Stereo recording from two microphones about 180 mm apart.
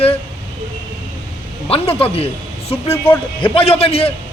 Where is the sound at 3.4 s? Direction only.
30° left (ahead or behind).